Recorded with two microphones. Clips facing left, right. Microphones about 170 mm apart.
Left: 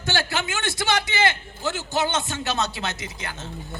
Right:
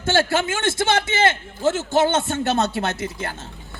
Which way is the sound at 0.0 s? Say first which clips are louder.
Right 7 dB; 50° right (ahead or behind).